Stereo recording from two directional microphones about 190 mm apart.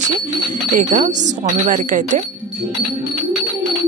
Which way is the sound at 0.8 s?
40° right (ahead or behind).